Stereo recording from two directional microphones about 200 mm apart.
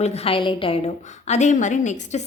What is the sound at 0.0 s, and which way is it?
A woman's voice, 30° left (ahead or behind).